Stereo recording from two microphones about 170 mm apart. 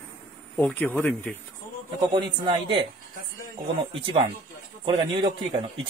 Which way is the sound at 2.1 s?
30° right (ahead or behind).